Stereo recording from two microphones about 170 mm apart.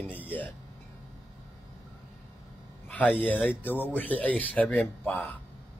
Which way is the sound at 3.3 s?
10° left (ahead or behind).